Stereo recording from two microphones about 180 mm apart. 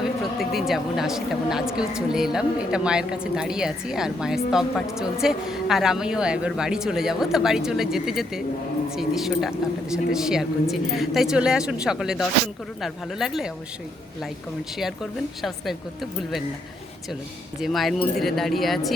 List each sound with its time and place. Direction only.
0.0 s speech: centre (ahead or behind)
15.4 s speech: centre (ahead or behind)
17.6 s speech: centre (ahead or behind)